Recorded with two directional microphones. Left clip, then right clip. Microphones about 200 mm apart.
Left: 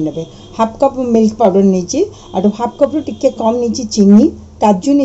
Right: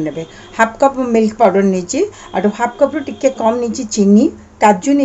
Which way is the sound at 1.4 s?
30° right (ahead or behind).